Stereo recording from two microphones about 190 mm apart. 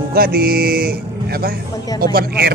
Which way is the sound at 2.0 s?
50° right (ahead or behind).